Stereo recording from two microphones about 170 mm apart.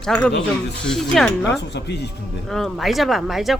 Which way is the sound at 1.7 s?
80° left.